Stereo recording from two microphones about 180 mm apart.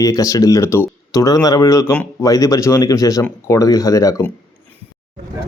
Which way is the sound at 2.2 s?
20° left (ahead or behind).